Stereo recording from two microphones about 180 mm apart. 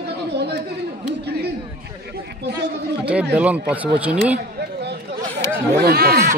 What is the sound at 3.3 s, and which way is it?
Speech, 5° right (ahead or behind).